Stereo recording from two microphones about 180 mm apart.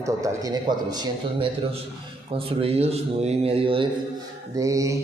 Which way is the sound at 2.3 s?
35° right (ahead or behind).